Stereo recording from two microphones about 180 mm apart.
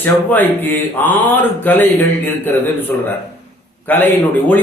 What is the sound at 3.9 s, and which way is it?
Speech, 10° left (ahead or behind).